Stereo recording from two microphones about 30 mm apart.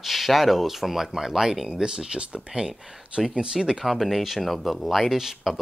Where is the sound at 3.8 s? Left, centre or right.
Centre.